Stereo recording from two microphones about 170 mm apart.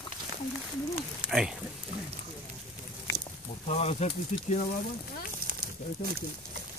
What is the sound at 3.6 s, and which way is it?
Speech, 40° left (ahead or behind).